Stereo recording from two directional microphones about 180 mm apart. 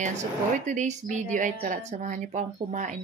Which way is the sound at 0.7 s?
40° right (ahead or behind).